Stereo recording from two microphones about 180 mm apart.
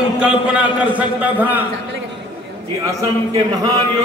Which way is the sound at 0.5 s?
10° right (ahead or behind).